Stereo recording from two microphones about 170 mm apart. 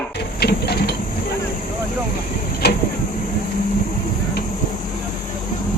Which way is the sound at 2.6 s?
75° left (ahead or behind).